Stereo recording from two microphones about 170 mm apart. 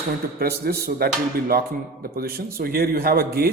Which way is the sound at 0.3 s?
65° right (ahead or behind).